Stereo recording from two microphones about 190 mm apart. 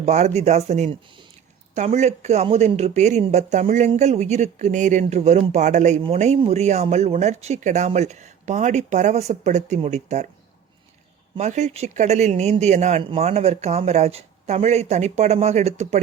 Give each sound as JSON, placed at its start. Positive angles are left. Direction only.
{"t": 0.0, "sound": "speech", "side_deg": -35}
{"t": 11.3, "sound": "speech", "side_deg": -35}